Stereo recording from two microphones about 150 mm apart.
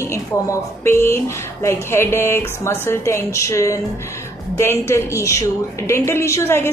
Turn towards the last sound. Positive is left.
turn(degrees=15)  # may be behind; listen again after turning